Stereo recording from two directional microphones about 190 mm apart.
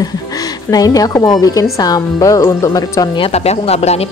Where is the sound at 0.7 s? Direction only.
20° left (ahead or behind).